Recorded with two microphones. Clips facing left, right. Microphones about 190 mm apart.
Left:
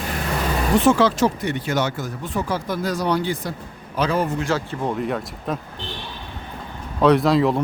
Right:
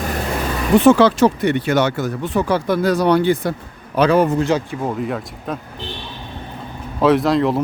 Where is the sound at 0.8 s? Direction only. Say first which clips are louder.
Right 6 dB; 65° right (ahead or behind).